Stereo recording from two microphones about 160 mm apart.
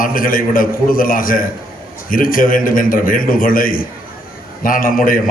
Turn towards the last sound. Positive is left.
turn(degrees=60)  # may be behind; listen again after turning